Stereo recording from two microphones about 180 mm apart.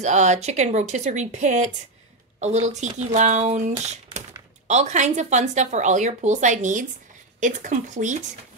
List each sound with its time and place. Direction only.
0.0 s speech: 40° right (ahead or behind)